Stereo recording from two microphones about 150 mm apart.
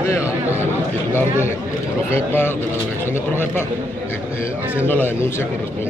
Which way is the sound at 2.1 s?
15° left (ahead or behind).